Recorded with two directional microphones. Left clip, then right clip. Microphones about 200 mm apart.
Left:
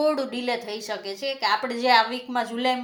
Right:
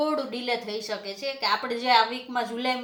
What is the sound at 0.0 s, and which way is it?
A woman's voice, 45° left (ahead or behind).